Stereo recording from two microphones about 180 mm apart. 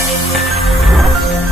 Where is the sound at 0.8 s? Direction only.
Centre (ahead or behind).